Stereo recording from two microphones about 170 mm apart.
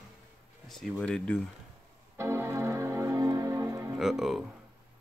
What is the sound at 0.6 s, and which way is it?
Speech, centre (ahead or behind).